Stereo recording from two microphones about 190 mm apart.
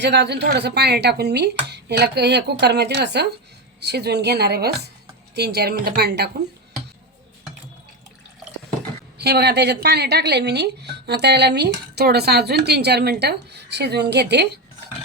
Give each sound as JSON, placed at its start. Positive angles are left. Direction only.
{"t": 0.0, "sound": "a woman's voice", "side_deg": -65}
{"t": 9.1, "sound": "a woman's voice", "side_deg": -60}